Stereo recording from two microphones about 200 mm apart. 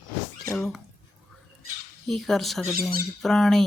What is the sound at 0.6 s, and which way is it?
Speech, centre (ahead or behind).